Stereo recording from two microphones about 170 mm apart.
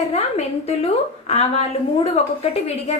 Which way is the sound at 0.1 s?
40° left (ahead or behind).